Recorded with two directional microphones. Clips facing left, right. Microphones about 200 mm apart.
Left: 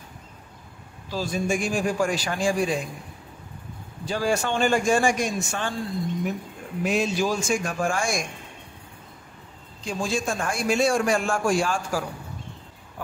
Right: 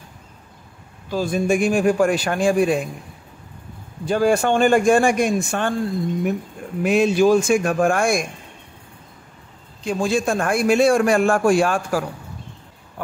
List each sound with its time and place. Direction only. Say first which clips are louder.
1.1 s a man's voice: right 6 dB; 55° right (ahead or behind)
4.0 s a man's voice: right 7 dB; 55° right (ahead or behind)
6.8 s a man's voice: right 8 dB; 60° right (ahead or behind)
9.8 s a man's voice: right 7 dB; 60° right (ahead or behind)